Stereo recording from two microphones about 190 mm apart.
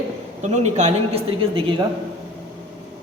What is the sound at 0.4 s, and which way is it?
A man's voice, 35° right (ahead or behind).